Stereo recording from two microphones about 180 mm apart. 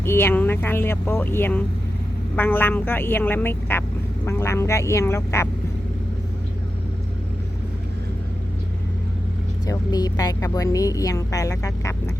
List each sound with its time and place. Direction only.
0.0 s speech: 15° left (ahead or behind)
9.6 s a woman's voice: 20° left (ahead or behind)